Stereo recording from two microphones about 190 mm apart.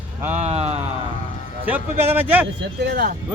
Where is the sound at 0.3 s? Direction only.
35° right (ahead or behind).